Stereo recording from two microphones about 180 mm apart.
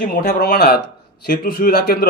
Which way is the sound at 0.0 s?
55° left (ahead or behind).